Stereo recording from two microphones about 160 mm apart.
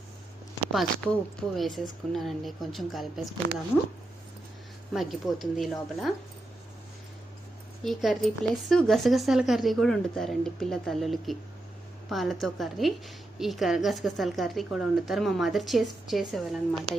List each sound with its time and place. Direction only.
0.7 s a woman's voice: centre (ahead or behind)
4.9 s a woman's voice: centre (ahead or behind)
7.9 s a woman's voice: centre (ahead or behind)